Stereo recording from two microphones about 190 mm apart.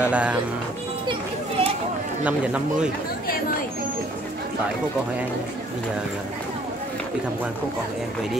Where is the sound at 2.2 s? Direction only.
5° right (ahead or behind).